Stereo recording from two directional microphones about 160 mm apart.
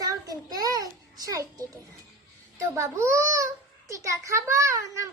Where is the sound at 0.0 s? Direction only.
25° right (ahead or behind).